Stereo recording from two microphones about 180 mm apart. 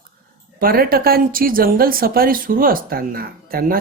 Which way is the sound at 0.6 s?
55° right (ahead or behind).